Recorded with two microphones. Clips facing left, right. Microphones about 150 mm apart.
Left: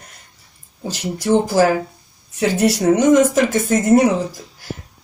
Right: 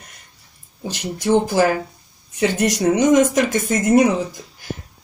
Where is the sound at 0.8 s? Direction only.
10° left (ahead or behind).